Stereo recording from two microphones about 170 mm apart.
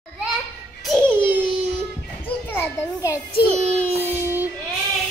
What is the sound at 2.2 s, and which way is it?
Children playing, 10° left (ahead or behind).